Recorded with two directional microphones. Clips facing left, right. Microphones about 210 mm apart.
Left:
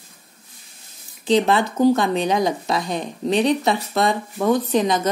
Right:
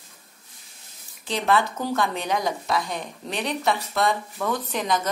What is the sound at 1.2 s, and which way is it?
Speech, 20° left (ahead or behind).